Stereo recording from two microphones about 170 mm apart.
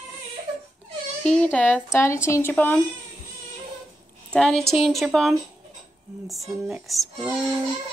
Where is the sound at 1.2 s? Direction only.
5° left (ahead or behind).